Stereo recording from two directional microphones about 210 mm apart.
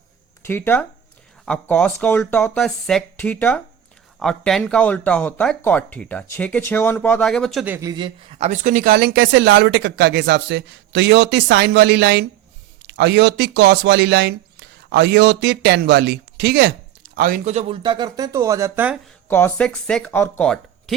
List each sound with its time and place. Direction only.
0.4 s speech: 10° left (ahead or behind); by 18.9 s 10° right (ahead or behind)
19.3 s speech: 10° left (ahead or behind)